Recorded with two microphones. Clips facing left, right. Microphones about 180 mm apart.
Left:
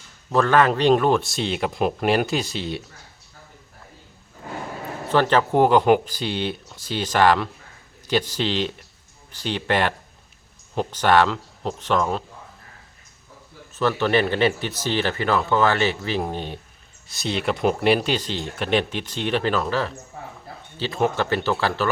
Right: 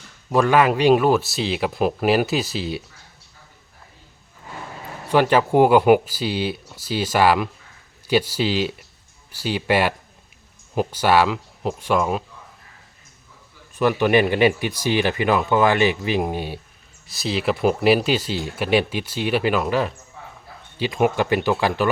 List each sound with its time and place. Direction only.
0.3 s a man's voice: 10° right (ahead or behind)
5.0 s speech: 10° right (ahead or behind)
13.7 s speech: 15° right (ahead or behind)
20.1 s a sound: 50° left (ahead or behind)
20.7 s speech: 15° right (ahead or behind)